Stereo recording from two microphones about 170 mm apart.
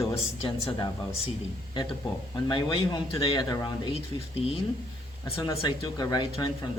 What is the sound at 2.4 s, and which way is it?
Speech, 25° left (ahead or behind).